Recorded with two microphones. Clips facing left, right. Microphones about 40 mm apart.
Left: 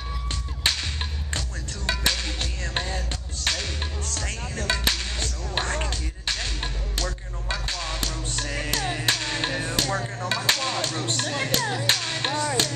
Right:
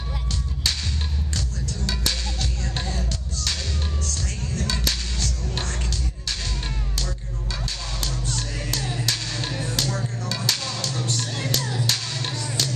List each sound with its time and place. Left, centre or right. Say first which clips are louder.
0.7 s music: left 2 dB; left
1.9 s music: left 4 dB; left